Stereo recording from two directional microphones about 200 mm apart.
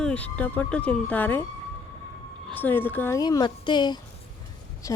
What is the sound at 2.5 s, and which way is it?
Speech, 10° left (ahead or behind).